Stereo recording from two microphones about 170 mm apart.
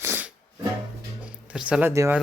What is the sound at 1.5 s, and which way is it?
Speech, 5° right (ahead or behind).